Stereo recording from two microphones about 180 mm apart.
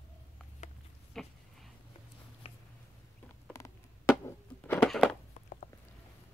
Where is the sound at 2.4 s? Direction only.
35° left (ahead or behind).